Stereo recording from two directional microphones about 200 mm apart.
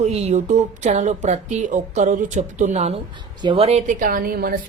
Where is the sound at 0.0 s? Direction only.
35° right (ahead or behind).